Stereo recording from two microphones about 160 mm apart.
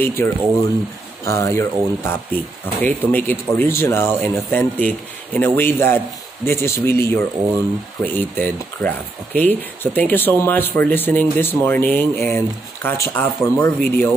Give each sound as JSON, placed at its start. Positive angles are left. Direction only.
{"t": 0.0, "sound": "speech", "side_deg": 15}